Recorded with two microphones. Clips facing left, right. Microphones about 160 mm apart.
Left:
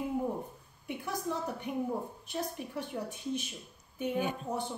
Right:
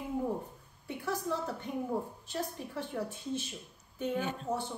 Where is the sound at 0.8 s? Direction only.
15° left (ahead or behind).